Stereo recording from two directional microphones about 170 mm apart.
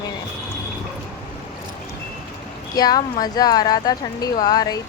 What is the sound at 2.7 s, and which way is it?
Speech, 25° left (ahead or behind).